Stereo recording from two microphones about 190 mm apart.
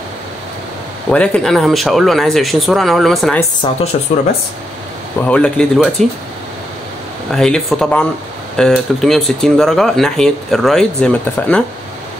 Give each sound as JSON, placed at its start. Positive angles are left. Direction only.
{"t": 1.1, "sound": "speech", "side_deg": 5}
{"t": 3.6, "sound": "speech", "side_deg": 25}
{"t": 5.2, "sound": "speech", "side_deg": 5}
{"t": 7.3, "sound": "speech", "side_deg": 5}